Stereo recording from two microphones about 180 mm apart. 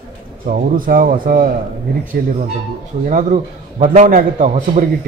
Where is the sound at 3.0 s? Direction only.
45° right (ahead or behind).